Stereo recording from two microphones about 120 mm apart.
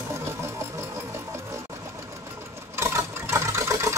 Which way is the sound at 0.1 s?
25° right (ahead or behind).